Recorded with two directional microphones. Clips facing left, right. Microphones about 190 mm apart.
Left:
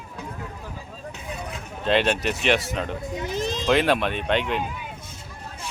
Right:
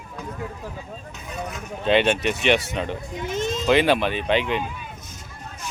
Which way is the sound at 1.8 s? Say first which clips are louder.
Right 2 dB; centre (ahead or behind).